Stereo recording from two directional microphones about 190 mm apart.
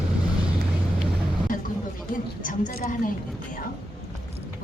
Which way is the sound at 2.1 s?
45° left (ahead or behind).